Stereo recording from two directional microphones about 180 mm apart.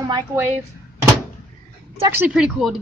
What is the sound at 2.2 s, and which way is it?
Speech, 5° right (ahead or behind).